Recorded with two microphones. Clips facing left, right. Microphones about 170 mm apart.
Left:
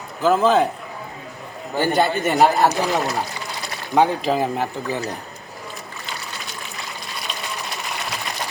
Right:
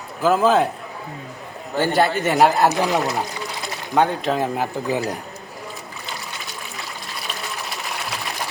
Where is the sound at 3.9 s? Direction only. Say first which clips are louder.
Left 1 dB; centre (ahead or behind).